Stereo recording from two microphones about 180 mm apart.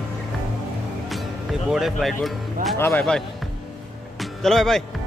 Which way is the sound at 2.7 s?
15° left (ahead or behind).